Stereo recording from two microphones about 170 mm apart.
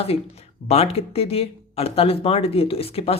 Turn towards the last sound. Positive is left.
turn(degrees=35)  # may be behind; listen again after turning